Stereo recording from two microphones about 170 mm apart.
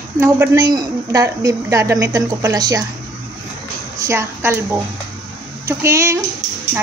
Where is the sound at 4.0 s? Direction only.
15° right (ahead or behind).